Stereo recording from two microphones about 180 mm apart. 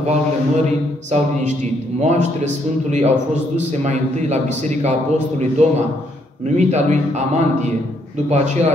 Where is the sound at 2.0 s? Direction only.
40° right (ahead or behind).